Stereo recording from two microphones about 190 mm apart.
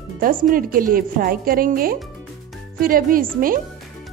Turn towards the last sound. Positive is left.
turn(degrees=-45)  # may be behind; listen again after turning